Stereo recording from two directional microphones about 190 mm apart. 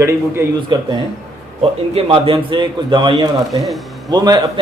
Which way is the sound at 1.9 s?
30° right (ahead or behind).